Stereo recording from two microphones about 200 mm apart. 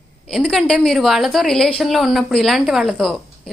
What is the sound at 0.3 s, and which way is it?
A woman's voice, centre (ahead or behind).